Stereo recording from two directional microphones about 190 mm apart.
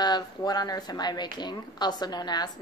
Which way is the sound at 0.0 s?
20° left (ahead or behind).